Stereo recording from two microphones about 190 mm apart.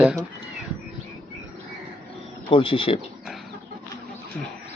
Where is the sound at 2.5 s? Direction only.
25° left (ahead or behind).